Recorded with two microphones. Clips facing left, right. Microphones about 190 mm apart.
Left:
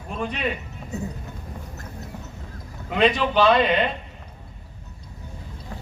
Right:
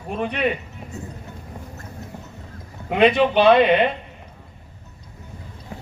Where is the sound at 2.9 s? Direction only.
60° right (ahead or behind).